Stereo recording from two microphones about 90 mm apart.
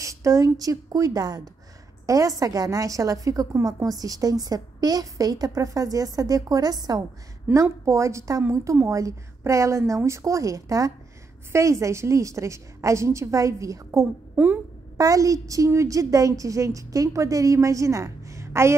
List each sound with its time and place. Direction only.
0.0 s a woman's voice: 35° right (ahead or behind)
7.5 s a woman's voice: 20° right (ahead or behind)
7.8 s a woman's voice: 35° right (ahead or behind)
14.3 s speech: 20° right (ahead or behind)
15.0 s a woman's voice: 40° right (ahead or behind)